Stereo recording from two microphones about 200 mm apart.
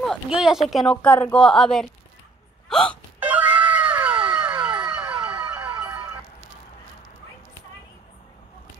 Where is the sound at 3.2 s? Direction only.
10° right (ahead or behind).